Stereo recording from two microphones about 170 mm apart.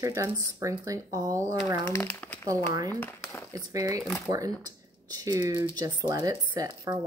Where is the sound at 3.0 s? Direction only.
10° left (ahead or behind).